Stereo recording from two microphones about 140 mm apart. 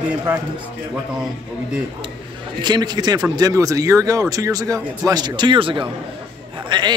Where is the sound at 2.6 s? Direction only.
30° right (ahead or behind).